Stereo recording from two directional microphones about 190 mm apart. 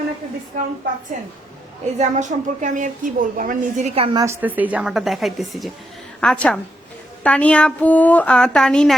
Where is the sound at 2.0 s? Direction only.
40° right (ahead or behind).